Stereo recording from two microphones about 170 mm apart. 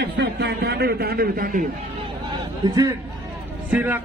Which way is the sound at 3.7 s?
10° right (ahead or behind).